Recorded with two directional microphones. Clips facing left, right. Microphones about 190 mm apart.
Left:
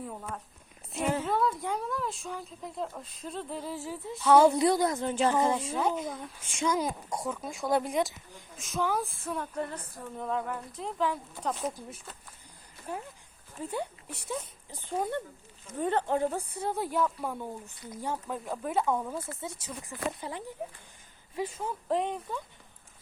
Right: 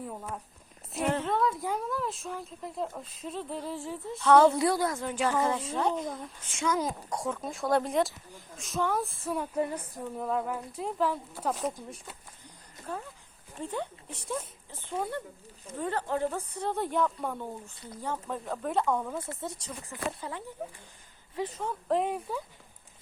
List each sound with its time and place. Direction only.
0.0 s a woman's voice: 5° right (ahead or behind)
6.5 s a woman's voice: 15° left (ahead or behind); by 11.9 s centre (ahead or behind)
12.9 s speech: 15° left (ahead or behind)
15.8 s a woman's voice: 20° left (ahead or behind); by 19.7 s centre (ahead or behind)
19.9 s a woman's voice: 15° left (ahead or behind); by 22.4 s 5° right (ahead or behind)